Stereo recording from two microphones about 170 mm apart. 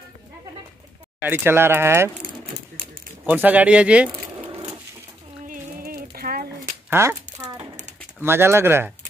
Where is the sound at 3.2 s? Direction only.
10° right (ahead or behind).